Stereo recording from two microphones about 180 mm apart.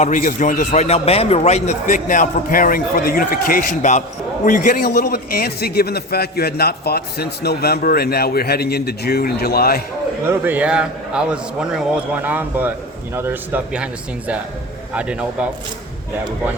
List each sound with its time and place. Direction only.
0.0 s a man's voice: 45° left (ahead or behind)
10.2 s a man's voice: 10° right (ahead or behind)